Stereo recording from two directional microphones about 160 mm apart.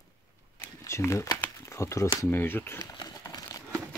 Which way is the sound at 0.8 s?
15° left (ahead or behind).